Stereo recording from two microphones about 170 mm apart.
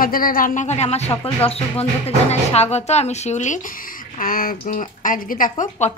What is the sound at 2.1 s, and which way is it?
Speech, 40° left (ahead or behind).